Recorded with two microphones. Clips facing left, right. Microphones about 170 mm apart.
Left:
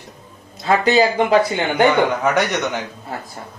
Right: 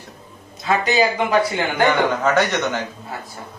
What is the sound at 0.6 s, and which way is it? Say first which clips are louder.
Speech: left 3 dB; 30° left (ahead or behind).